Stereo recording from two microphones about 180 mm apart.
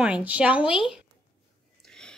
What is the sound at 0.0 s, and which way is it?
A woman's voice, 5° right (ahead or behind).